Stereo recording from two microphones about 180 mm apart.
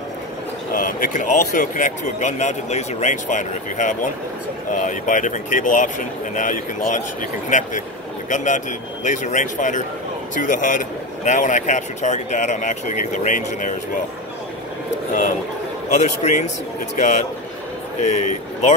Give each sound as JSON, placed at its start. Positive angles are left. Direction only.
{"t": 0.7, "sound": "a man's voice", "side_deg": 50}
{"t": 15.9, "sound": "speech", "side_deg": 40}
{"t": 18.0, "sound": "speech", "side_deg": 40}